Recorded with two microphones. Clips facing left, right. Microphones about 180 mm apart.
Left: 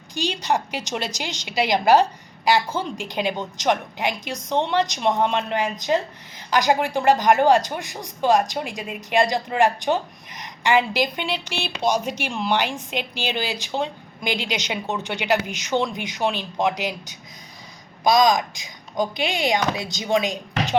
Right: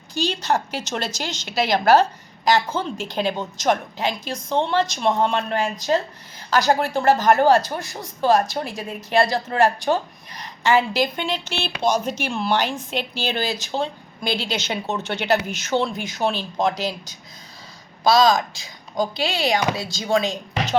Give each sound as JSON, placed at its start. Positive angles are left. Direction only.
{"t": 0.1, "sound": "speech", "side_deg": 15}